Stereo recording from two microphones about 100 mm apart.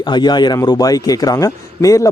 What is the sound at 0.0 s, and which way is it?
A man's voice, 45° left (ahead or behind).